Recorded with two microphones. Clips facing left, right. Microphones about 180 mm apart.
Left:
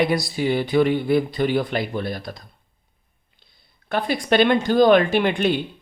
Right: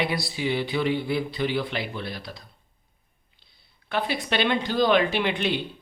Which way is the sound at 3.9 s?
45° left (ahead or behind).